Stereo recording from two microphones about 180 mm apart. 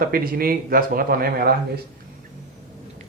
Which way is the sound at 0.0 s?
55° right (ahead or behind).